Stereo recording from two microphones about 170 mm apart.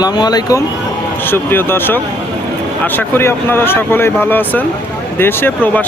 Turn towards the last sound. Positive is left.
turn(degrees=10)  # may be behind; listen again after turning